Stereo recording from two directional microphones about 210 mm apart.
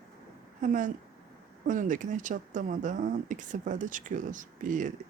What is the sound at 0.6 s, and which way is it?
Speech, 35° right (ahead or behind).